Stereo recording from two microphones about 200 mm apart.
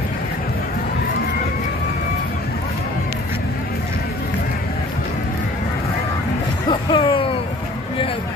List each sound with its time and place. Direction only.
6.7 s music: 25° left (ahead or behind)